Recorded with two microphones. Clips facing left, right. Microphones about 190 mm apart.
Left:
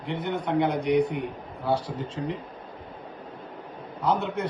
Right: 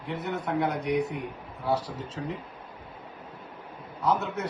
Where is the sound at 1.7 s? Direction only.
25° left (ahead or behind).